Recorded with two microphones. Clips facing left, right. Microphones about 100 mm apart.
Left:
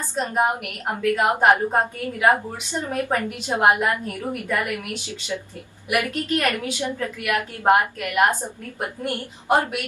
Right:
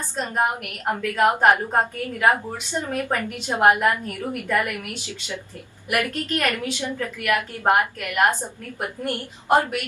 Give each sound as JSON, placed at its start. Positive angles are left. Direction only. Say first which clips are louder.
{"t": 0.2, "sound": "a woman's voice", "louder": "left 2 dB", "side_deg": 15}
{"t": 5.9, "sound": "a woman's voice", "louder": "left 1 dB", "side_deg": 15}